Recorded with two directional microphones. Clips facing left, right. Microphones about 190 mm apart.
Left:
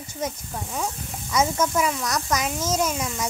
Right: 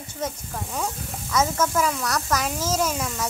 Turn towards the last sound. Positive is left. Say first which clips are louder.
# even
turn(degrees=5)  # may be behind; listen again after turning